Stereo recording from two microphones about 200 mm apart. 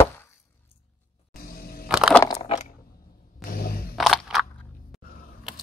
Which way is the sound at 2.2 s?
15° left (ahead or behind).